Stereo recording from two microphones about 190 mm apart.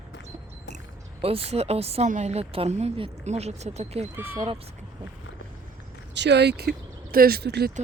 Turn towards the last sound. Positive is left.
turn(degrees=-60)  # may be behind; listen again after turning